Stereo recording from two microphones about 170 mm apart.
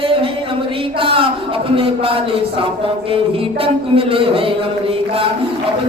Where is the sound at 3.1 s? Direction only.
35° right (ahead or behind).